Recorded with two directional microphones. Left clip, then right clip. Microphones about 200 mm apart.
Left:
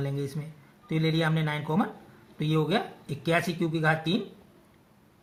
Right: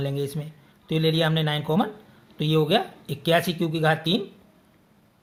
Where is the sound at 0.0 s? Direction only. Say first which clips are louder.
Right 5 dB; 55° right (ahead or behind).